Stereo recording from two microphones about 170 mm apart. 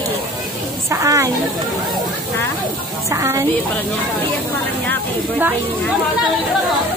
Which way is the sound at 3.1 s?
15° right (ahead or behind).